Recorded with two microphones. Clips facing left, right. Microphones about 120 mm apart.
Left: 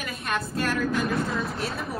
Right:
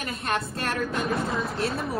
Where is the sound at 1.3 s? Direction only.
Centre (ahead or behind).